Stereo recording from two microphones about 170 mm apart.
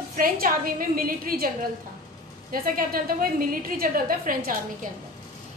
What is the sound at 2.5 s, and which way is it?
A woman's voice, 55° right (ahead or behind).